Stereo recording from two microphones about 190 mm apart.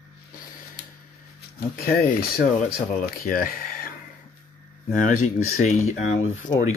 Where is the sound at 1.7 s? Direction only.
50° left (ahead or behind).